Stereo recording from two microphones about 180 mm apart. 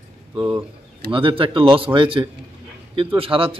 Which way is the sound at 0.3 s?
25° right (ahead or behind).